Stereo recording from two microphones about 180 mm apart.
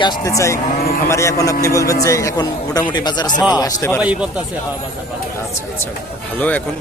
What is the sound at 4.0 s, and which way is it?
Speech, 5° right (ahead or behind).